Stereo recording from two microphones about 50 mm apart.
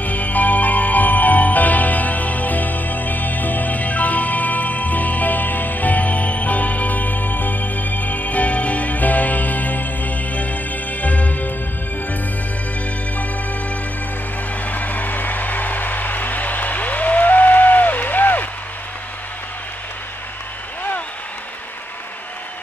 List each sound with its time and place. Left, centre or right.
0.0 s music: left
13.2 s music: left